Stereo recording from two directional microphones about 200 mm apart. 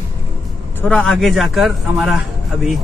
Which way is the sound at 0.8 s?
5° left (ahead or behind).